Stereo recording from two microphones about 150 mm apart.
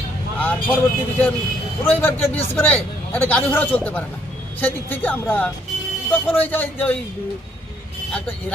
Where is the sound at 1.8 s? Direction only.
15° left (ahead or behind).